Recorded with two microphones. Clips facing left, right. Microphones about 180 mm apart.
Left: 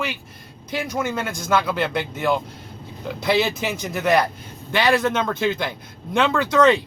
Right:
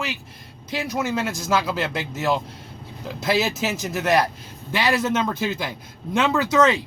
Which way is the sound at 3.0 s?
Centre (ahead or behind).